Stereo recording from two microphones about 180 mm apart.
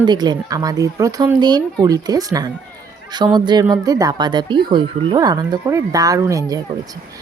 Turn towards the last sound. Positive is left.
turn(degrees=-20)  # may be behind; listen again after turning